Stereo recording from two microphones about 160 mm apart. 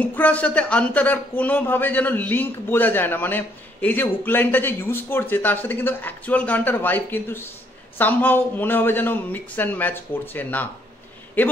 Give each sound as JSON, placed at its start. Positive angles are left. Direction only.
{"t": 0.0, "sound": "speech", "side_deg": 10}